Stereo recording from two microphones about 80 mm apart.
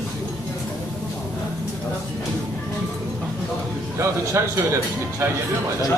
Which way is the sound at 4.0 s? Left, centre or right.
Right.